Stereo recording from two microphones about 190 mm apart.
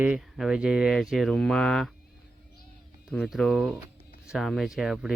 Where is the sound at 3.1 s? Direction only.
Centre (ahead or behind).